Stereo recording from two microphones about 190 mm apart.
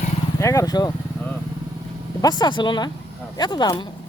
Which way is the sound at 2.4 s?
25° left (ahead or behind).